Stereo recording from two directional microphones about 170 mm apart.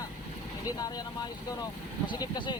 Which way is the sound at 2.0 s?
25° left (ahead or behind).